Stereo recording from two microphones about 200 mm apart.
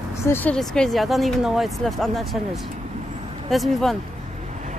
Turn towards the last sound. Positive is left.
turn(degrees=0)  # may be behind; listen again after turning